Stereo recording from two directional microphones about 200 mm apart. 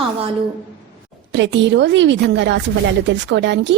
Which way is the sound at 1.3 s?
65° right (ahead or behind).